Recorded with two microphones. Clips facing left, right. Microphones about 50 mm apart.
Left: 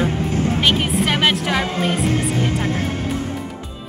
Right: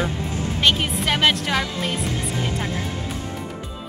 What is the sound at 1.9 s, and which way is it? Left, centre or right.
Music, left.